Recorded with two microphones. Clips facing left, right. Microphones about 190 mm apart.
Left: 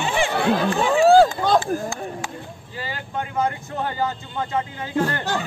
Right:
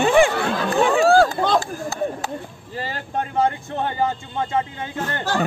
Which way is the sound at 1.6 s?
40° right (ahead or behind).